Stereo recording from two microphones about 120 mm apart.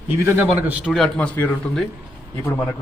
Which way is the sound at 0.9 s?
5° left (ahead or behind).